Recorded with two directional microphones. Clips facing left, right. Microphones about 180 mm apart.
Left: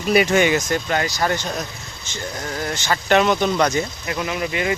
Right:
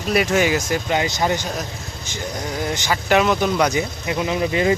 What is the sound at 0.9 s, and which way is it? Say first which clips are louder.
Speech: right 1 dB; 20° right (ahead or behind).